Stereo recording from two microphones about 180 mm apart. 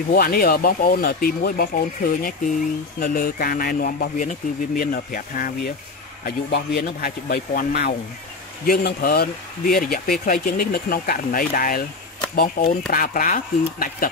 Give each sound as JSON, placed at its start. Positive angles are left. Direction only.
{"t": 0.1, "sound": "speech", "side_deg": 55}
{"t": 6.2, "sound": "speech", "side_deg": 60}